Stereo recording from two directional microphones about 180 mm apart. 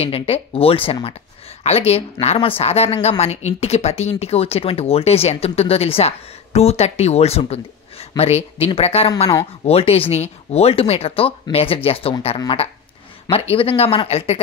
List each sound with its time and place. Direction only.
0.0 s speech: 30° left (ahead or behind)